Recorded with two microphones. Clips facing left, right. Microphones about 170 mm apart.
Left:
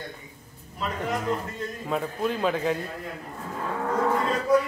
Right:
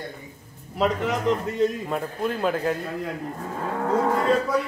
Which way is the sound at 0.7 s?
90° right.